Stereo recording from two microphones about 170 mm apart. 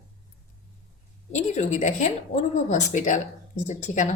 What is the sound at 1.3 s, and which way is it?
A woman's voice, 40° left (ahead or behind).